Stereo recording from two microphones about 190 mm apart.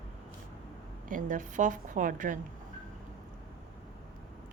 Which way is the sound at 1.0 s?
45° right (ahead or behind).